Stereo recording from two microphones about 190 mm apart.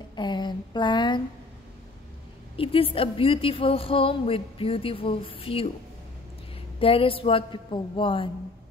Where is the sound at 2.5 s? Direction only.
30° left (ahead or behind).